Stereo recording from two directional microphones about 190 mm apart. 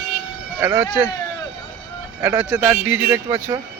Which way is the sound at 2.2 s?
10° right (ahead or behind).